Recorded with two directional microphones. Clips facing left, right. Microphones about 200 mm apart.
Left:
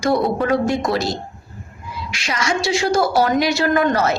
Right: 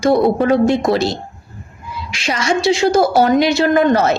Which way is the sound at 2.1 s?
25° right (ahead or behind).